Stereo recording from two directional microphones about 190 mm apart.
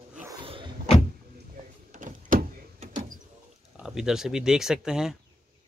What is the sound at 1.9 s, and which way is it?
Door, 45° right (ahead or behind).